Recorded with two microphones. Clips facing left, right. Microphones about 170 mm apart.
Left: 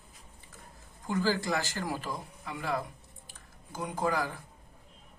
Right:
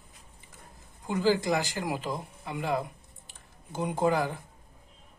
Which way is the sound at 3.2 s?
25° right (ahead or behind).